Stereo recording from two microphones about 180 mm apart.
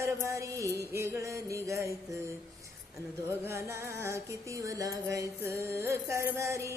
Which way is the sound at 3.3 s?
15° right (ahead or behind).